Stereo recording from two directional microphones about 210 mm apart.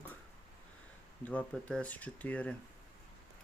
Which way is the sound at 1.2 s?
5° left (ahead or behind).